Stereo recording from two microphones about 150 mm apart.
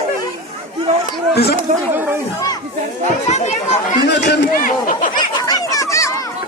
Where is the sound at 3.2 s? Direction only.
50° left (ahead or behind).